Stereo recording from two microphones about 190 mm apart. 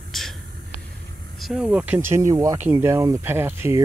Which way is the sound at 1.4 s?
Centre (ahead or behind).